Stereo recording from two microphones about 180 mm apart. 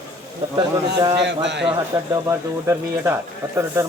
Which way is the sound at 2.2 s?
15° right (ahead or behind).